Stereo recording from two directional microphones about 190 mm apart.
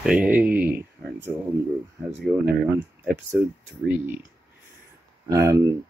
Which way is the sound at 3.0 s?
10° right (ahead or behind).